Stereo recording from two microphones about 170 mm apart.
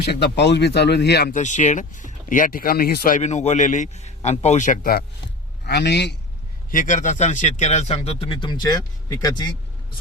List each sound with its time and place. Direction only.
0.0 s speech: 75° left (ahead or behind)
1.3 s speech: 45° left (ahead or behind)
5.6 s speech: 80° left
6.7 s speech: 50° left (ahead or behind); by 9.5 s 25° left (ahead or behind)